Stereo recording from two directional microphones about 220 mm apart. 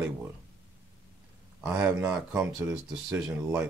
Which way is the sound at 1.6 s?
5° right (ahead or behind).